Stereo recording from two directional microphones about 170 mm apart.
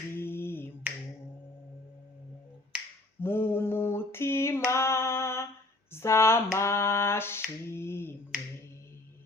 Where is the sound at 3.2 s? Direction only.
15° left (ahead or behind).